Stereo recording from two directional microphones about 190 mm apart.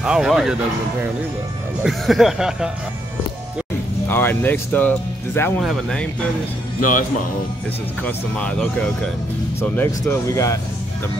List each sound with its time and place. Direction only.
0.0 s speech: 5° right (ahead or behind)
1.8 s speech: centre (ahead or behind)
4.1 s speech: 10° left (ahead or behind)
6.8 s speech: 45° left (ahead or behind)
8.0 s speech: 5° left (ahead or behind)